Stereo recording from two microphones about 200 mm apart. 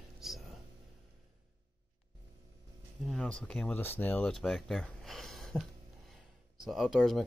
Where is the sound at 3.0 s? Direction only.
5° left (ahead or behind).